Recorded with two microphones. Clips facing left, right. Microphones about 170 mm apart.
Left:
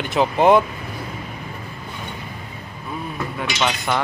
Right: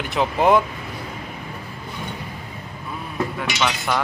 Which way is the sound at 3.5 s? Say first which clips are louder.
Left 1 dB; 20° left (ahead or behind).